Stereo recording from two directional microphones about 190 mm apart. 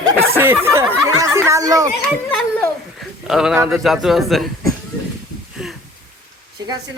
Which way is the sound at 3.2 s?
5° right (ahead or behind).